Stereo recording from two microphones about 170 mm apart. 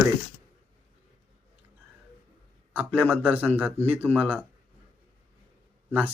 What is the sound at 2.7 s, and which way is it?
A man's voice, 10° right (ahead or behind).